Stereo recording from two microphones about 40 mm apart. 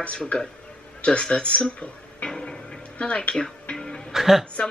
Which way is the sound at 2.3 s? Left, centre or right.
Centre.